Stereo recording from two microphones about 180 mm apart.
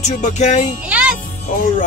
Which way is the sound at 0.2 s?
40° left (ahead or behind).